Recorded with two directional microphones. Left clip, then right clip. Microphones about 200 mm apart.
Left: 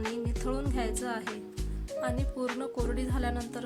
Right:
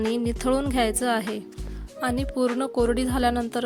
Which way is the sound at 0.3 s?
45° right (ahead or behind).